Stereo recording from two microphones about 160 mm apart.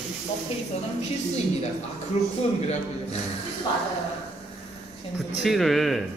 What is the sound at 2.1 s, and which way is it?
Speech, 45° left (ahead or behind).